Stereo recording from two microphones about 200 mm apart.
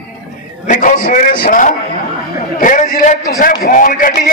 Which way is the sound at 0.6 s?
40° left (ahead or behind).